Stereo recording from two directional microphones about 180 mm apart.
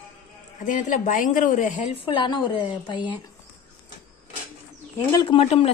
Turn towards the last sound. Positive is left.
turn(degrees=35)  # may be behind; listen again after turning